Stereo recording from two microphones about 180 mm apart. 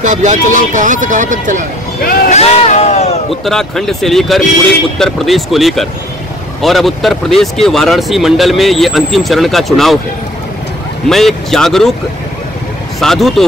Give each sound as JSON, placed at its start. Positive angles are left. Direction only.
{"t": 0.0, "sound": "speech", "side_deg": -45}
{"t": 2.0, "sound": "speech", "side_deg": 55}
{"t": 2.3, "sound": "a sound", "side_deg": 40}
{"t": 3.3, "sound": "speech", "side_deg": 0}
{"t": 11.1, "sound": "speech", "side_deg": 0}
{"t": 13.0, "sound": "speech", "side_deg": 0}